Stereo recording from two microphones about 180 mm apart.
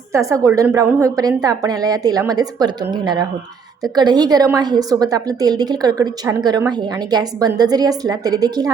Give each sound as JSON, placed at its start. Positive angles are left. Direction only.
{"t": 0.1, "sound": "a woman's voice", "side_deg": -15}